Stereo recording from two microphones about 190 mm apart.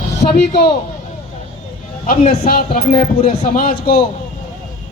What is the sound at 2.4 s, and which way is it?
Speech, 55° left (ahead or behind).